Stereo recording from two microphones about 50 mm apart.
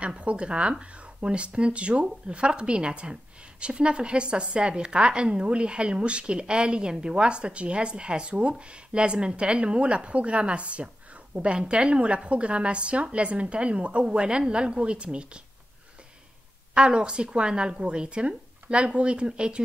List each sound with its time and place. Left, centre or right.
0.0 s speech: right
16.7 s speech: right